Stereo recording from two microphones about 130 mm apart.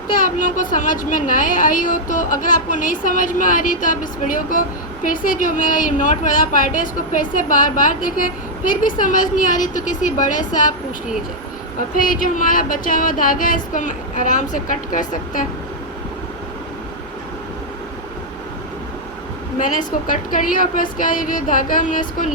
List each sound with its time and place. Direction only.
0.1 s a woman's voice: 90° left
11.9 s a woman's voice: 90° left
19.6 s a woman's voice: 90° left